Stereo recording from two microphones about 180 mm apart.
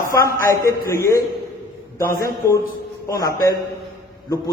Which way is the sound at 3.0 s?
20° left (ahead or behind).